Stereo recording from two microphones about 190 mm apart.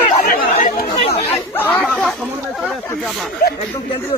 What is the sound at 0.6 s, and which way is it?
Chatter, 45° left (ahead or behind).